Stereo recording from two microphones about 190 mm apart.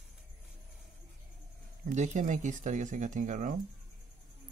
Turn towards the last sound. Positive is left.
turn(degrees=-40)  # may be behind; listen again after turning